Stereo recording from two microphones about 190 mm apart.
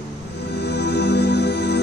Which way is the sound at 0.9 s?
60° left (ahead or behind).